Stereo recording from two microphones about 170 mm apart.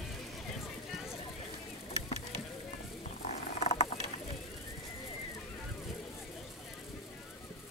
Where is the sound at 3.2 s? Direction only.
40° left (ahead or behind).